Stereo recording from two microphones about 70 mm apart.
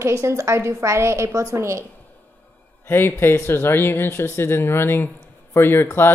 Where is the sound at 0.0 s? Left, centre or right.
Right.